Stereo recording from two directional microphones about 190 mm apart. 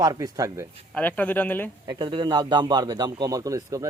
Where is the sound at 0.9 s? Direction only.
5° left (ahead or behind).